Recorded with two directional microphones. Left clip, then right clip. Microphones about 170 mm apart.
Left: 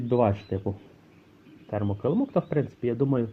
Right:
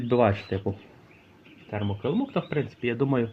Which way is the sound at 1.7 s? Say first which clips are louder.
Left 2 dB; 20° left (ahead or behind).